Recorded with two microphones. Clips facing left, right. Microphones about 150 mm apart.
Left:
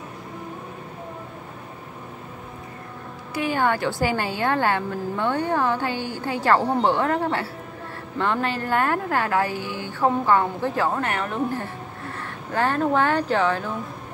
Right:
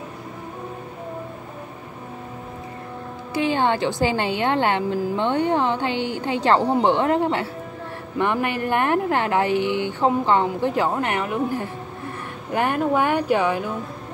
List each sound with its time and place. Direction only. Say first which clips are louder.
3.3 s a woman's voice: right 2 dB; 25° right (ahead or behind)